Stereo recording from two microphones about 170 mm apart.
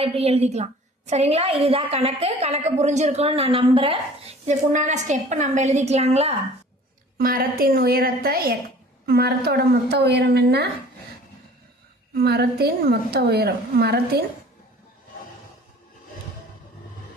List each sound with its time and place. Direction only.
0.0 s a woman's voice: 35° right (ahead or behind)
7.2 s a woman's voice: 60° right (ahead or behind)
12.1 s a woman's voice: 70° right (ahead or behind)